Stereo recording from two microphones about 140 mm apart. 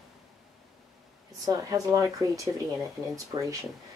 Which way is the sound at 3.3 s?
35° right (ahead or behind).